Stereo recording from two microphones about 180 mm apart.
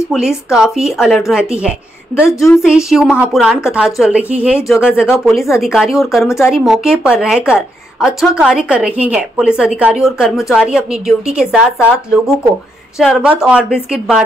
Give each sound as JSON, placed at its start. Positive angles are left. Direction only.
{"t": 0.5, "sound": "a woman's voice", "side_deg": -5}
{"t": 6.2, "sound": "speech", "side_deg": 15}
{"t": 6.5, "sound": "a woman's voice", "side_deg": 0}